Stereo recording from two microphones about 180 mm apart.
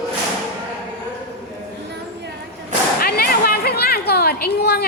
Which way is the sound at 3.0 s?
55° left (ahead or behind).